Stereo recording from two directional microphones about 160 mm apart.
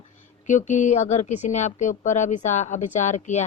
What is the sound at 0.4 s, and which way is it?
Speech, 50° left (ahead or behind).